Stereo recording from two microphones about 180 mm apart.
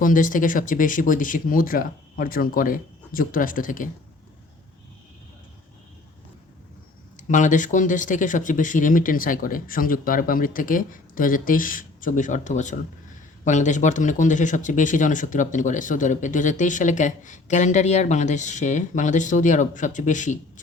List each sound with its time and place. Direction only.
0.0 s speech: 50° left (ahead or behind)
7.2 s speech: 45° left (ahead or behind)